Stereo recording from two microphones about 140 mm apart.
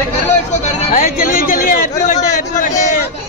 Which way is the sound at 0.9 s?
75° left (ahead or behind).